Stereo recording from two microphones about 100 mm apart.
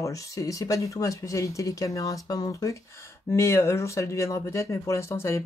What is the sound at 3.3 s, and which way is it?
Speech, 25° left (ahead or behind).